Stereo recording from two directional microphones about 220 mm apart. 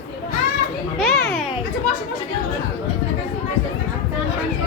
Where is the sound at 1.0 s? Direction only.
5° left (ahead or behind).